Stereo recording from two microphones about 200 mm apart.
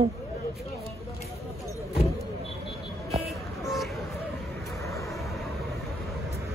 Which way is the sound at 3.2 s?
Centre (ahead or behind).